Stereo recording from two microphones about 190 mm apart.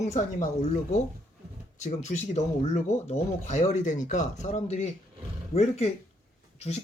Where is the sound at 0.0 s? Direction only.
35° left (ahead or behind).